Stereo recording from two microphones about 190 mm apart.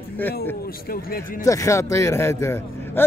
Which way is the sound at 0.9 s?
50° left (ahead or behind).